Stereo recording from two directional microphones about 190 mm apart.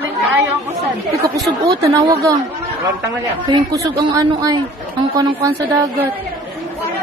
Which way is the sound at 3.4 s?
20° right (ahead or behind).